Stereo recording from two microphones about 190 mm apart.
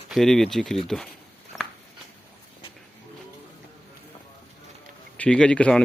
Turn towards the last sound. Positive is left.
turn(degrees=5)  # may be behind; listen again after turning